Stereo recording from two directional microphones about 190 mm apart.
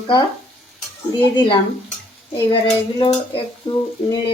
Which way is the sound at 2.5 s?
30° left (ahead or behind).